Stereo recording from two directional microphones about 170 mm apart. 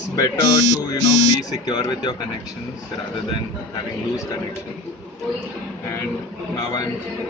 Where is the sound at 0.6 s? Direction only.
20° right (ahead or behind).